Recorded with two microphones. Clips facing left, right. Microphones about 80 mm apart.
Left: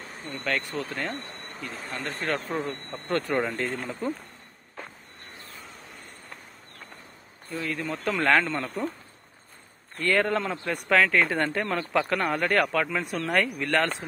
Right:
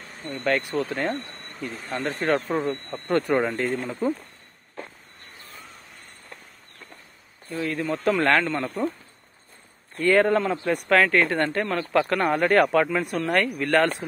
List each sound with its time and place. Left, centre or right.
0.7 s speech: right
2.2 s speech: centre
3.5 s speech: centre
7.5 s speech: centre
9.9 s speech: centre